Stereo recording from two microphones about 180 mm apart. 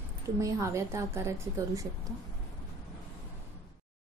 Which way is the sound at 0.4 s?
15° right (ahead or behind).